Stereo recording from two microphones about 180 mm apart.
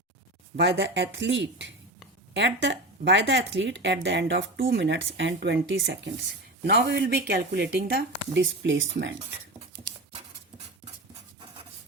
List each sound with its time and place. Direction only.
0.5 s a woman's voice: 75° right (ahead or behind)
6.7 s a woman's voice: 70° right (ahead or behind); by 9.1 s 85° right